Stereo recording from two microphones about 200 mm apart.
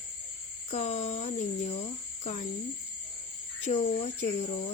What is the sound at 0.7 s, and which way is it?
Speech, 35° left (ahead or behind).